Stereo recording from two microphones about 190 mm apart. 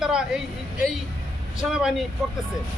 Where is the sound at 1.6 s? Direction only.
5° right (ahead or behind).